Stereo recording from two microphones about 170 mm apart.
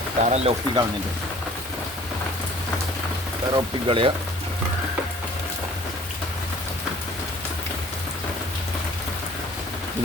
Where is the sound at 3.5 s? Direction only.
30° right (ahead or behind).